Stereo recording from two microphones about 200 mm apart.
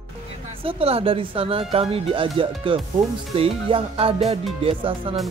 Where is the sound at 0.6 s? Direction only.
30° right (ahead or behind).